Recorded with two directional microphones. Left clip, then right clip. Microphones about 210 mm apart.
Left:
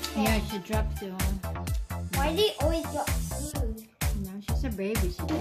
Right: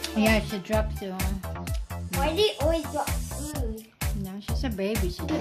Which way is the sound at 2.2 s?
30° left (ahead or behind).